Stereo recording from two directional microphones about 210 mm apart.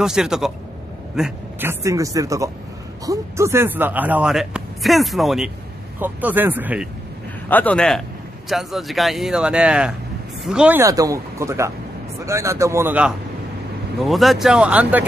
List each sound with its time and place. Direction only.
0.0 s a man's voice: 5° right (ahead or behind)
7.4 s a man's voice: 10° left (ahead or behind)